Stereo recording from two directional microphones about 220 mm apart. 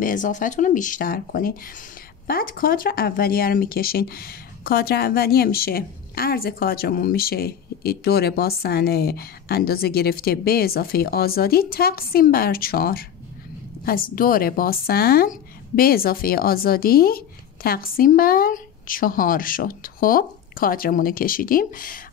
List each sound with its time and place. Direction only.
0.0 s a woman's voice: 35° left (ahead or behind)